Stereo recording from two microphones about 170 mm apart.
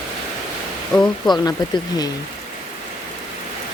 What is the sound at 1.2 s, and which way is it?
Speech, 25° left (ahead or behind).